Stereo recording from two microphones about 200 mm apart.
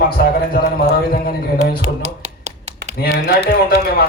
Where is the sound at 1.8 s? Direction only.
35° right (ahead or behind).